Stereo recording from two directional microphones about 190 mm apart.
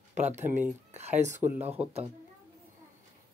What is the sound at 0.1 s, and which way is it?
Speech, 35° right (ahead or behind).